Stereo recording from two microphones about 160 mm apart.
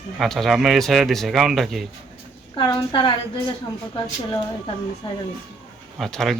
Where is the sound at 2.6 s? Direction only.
30° left (ahead or behind).